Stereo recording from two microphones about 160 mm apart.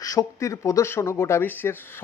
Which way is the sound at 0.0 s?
20° left (ahead or behind).